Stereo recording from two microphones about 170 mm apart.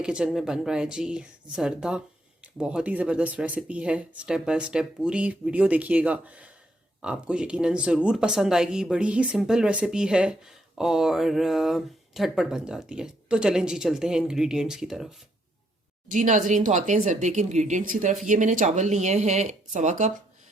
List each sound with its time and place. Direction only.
0.0 s speech: 5° right (ahead or behind)
16.0 s speech: 50° right (ahead or behind)